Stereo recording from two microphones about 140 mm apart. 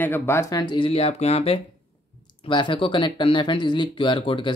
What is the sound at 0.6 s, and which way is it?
Speech, 35° left (ahead or behind).